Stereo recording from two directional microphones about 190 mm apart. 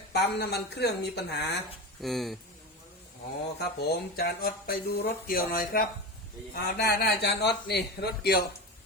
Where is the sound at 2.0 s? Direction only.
Centre (ahead or behind).